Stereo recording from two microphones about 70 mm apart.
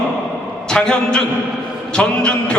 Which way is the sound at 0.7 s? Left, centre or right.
Centre.